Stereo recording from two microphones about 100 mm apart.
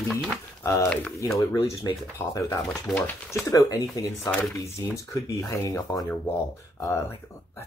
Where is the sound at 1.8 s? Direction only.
40° left (ahead or behind).